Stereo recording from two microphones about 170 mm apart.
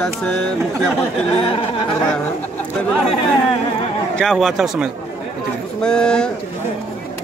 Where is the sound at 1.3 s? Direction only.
30° left (ahead or behind).